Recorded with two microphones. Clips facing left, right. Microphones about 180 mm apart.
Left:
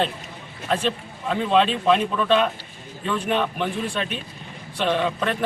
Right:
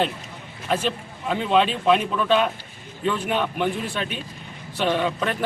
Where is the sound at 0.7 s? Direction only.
5° right (ahead or behind).